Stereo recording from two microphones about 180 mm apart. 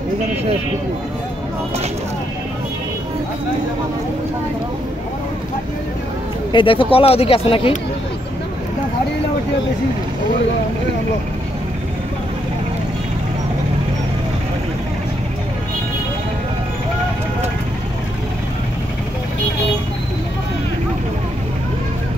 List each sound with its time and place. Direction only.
6.5 s speech: 30° left (ahead or behind)